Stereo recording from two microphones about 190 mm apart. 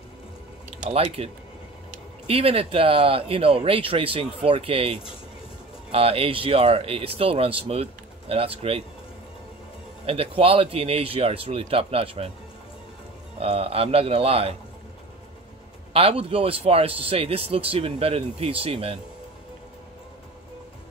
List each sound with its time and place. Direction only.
0.7 s speech: 35° right (ahead or behind)
10.0 s a man's voice: 30° right (ahead or behind)
13.4 s a man's voice: 30° right (ahead or behind)
15.9 s a man's voice: 30° right (ahead or behind)